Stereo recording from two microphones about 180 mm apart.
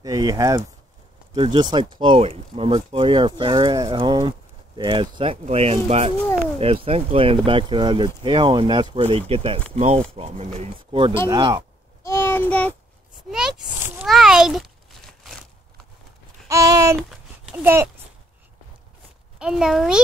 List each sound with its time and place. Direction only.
0.0 s speech: 20° right (ahead or behind)
12.0 s child singing: 15° left (ahead or behind)
13.3 s speech: 5° right (ahead or behind)
16.4 s a sound: 15° right (ahead or behind)
17.5 s speech: 10° right (ahead or behind)
19.3 s a child's voice: 5° right (ahead or behind)